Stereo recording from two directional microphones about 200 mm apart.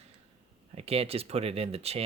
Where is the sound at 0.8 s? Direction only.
30° right (ahead or behind).